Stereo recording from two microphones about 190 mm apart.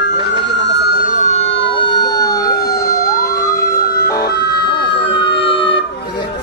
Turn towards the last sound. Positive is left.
turn(degrees=30)  # may be behind; listen again after turning